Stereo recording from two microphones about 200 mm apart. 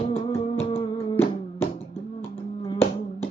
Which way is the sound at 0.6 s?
25° left (ahead or behind).